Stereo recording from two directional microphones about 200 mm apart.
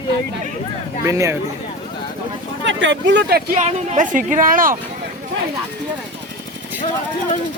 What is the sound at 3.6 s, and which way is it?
Speech, 35° right (ahead or behind).